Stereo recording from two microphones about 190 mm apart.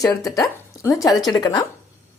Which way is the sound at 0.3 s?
15° left (ahead or behind).